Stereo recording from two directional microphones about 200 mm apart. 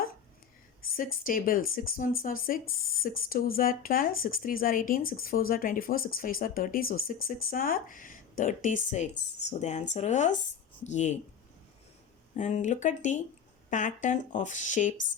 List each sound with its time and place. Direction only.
0.9 s speech: 45° left (ahead or behind)
12.4 s speech: 35° left (ahead or behind)